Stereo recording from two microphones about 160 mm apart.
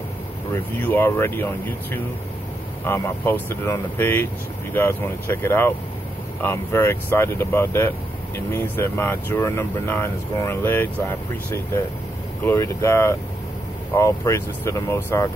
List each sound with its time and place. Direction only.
0.5 s speech: 10° left (ahead or behind)
12.4 s speech: 15° left (ahead or behind)